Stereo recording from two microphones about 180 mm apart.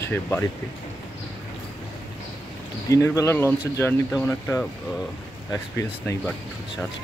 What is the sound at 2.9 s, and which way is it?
Speech, 15° left (ahead or behind).